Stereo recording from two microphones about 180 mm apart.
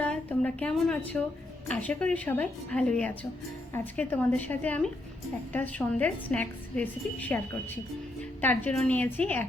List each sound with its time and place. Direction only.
0.0 s a woman's voice: 10° left (ahead or behind)